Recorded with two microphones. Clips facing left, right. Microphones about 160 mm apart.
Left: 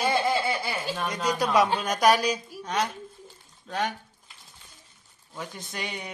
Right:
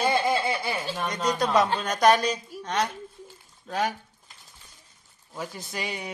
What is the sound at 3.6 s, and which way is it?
Speech, centre (ahead or behind).